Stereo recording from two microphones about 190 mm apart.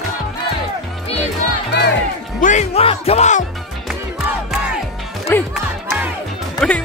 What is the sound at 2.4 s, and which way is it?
Music, 35° left (ahead or behind).